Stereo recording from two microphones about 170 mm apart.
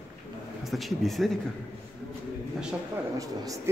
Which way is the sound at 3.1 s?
20° right (ahead or behind).